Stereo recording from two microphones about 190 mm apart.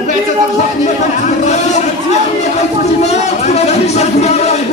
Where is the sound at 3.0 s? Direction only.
35° left (ahead or behind).